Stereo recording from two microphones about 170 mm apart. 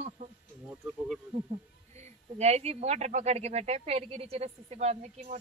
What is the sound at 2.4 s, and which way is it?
A woman's voice, 40° right (ahead or behind).